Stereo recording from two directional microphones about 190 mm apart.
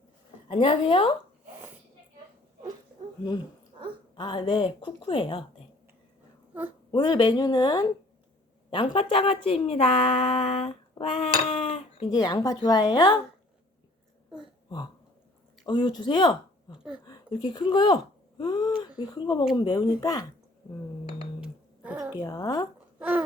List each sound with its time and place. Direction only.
0.4 s a woman's voice: 30° left (ahead or behind)
4.1 s a woman's voice: 25° left (ahead or behind)
6.5 s a woman's voice: 10° right (ahead or behind)
6.9 s a woman's voice: 25° left (ahead or behind)
15.6 s a woman's voice: 25° left (ahead or behind)
21.9 s a sound: 10° right (ahead or behind)
22.2 s a woman's voice: 20° left (ahead or behind)
23.0 s a sound: 10° right (ahead or behind)